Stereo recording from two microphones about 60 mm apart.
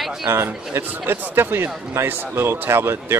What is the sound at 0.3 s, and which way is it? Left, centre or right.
A man's voice, right.